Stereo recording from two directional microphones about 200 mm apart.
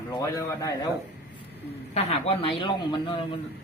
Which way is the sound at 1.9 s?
30° left (ahead or behind).